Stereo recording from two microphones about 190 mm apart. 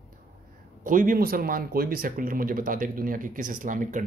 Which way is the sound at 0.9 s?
45° right (ahead or behind).